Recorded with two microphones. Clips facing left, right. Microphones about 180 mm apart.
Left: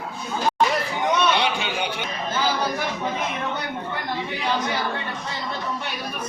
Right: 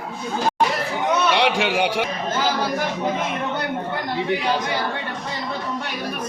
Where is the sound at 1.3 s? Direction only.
90° right.